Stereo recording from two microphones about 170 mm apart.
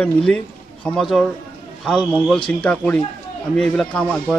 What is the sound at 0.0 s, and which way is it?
Speech, 5° left (ahead or behind).